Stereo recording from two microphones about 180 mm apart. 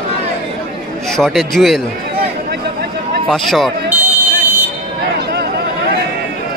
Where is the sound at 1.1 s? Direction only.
Centre (ahead or behind).